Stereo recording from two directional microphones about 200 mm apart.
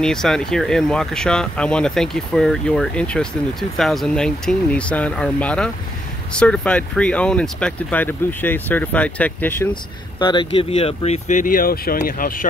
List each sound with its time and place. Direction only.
0.0 s speech: centre (ahead or behind)
10.1 s speech: 25° left (ahead or behind); by 12.4 s 45° left (ahead or behind)